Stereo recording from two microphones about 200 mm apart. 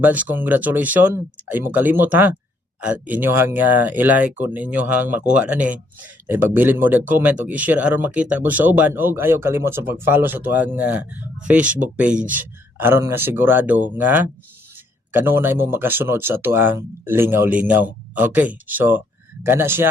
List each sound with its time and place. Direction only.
0.0 s speech: 10° right (ahead or behind)
12.1 s speech: 40° right (ahead or behind)
12.4 s speech: 10° right (ahead or behind)